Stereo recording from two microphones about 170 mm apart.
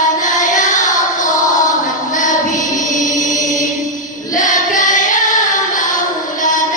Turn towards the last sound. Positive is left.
turn(degrees=50)  # may be behind; listen again after turning